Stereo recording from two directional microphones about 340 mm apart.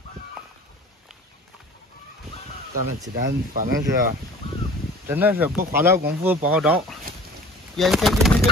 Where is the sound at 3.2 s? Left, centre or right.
Right.